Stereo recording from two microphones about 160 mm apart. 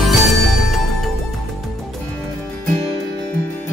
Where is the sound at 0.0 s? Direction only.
Centre (ahead or behind).